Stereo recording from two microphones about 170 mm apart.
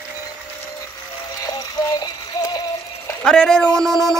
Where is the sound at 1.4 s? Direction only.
20° left (ahead or behind).